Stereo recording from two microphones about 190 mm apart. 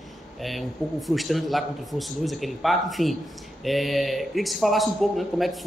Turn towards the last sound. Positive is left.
turn(degrees=0)  # may be behind; listen again after turning